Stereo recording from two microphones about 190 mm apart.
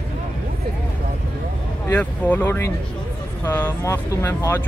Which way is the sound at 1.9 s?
10° left (ahead or behind).